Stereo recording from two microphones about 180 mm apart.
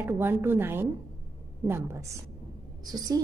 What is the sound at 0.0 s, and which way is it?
A woman's voice, 10° right (ahead or behind).